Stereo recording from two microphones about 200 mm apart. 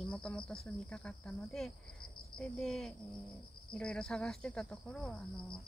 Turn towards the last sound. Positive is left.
turn(degrees=5)  # may be behind; listen again after turning